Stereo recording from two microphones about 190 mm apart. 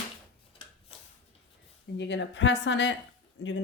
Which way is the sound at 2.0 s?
70° left (ahead or behind).